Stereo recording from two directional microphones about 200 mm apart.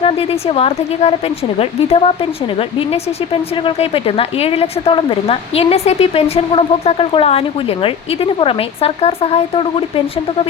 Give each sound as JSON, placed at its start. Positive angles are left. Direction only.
{"t": 0.0, "sound": "speech", "side_deg": 30}